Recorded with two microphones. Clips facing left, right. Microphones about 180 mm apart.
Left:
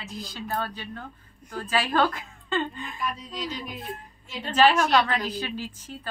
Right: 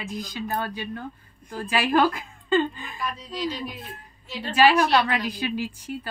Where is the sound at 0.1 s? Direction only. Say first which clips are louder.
Right 2 dB; 15° right (ahead or behind).